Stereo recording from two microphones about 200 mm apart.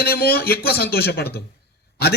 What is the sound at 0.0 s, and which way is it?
A man's voice, 50° left (ahead or behind).